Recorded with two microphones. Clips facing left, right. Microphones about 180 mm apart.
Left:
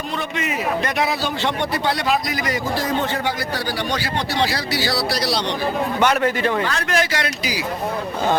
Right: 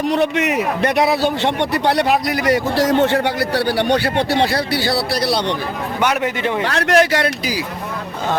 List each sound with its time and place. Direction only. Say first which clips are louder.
0.1 s a man's voice: right 7 dB; 70° right (ahead or behind)
6.0 s a man's voice: even; 15° right (ahead or behind)
6.7 s a man's voice: right 7 dB; 65° right (ahead or behind)